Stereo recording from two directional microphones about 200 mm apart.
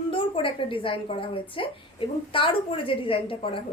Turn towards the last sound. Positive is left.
turn(degrees=25)  # may be behind; listen again after turning